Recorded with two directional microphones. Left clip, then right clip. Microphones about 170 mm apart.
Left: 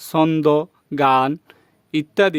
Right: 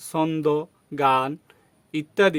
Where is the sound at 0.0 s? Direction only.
55° left (ahead or behind).